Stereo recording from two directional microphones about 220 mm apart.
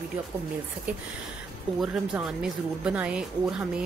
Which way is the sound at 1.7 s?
Centre (ahead or behind).